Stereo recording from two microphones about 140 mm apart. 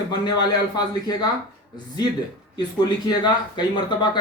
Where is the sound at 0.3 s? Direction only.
30° left (ahead or behind).